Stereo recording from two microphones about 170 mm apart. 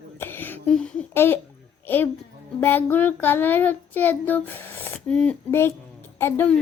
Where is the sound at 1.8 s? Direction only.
10° left (ahead or behind).